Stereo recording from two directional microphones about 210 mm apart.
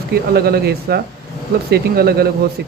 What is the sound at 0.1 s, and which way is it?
Speech, 50° right (ahead or behind).